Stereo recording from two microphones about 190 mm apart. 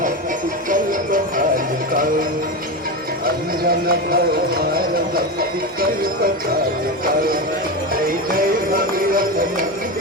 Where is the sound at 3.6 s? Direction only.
50° right (ahead or behind).